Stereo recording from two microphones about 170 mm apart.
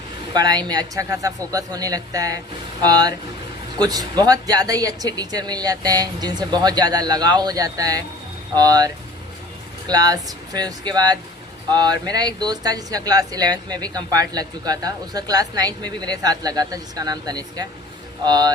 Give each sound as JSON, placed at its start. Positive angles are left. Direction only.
{"t": 0.3, "sound": "speech", "side_deg": -25}
{"t": 9.9, "sound": "speech", "side_deg": -20}